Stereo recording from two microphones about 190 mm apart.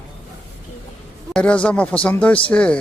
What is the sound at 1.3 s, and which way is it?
Speech, 5° left (ahead or behind).